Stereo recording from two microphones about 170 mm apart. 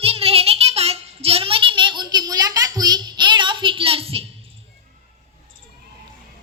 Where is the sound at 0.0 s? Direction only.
35° right (ahead or behind).